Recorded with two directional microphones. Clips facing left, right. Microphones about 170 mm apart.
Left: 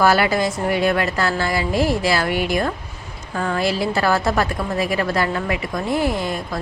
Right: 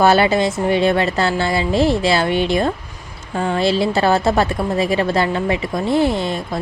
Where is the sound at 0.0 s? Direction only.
25° right (ahead or behind).